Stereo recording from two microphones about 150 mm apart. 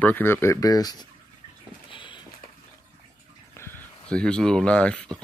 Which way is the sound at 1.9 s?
35° left (ahead or behind).